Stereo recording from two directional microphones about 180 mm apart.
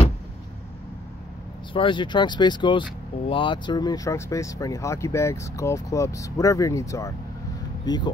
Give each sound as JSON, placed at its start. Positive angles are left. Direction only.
{"t": 1.7, "sound": "speech", "side_deg": 25}